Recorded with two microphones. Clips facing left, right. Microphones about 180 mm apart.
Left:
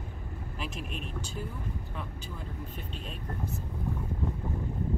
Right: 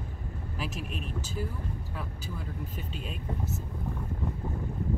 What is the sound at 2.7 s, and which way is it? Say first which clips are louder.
Speech: right 2 dB; 5° right (ahead or behind).